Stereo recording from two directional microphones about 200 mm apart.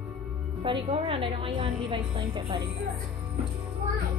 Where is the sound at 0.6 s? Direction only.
25° right (ahead or behind).